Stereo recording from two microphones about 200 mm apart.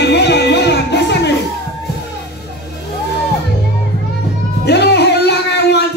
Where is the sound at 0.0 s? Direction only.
60° left (ahead or behind).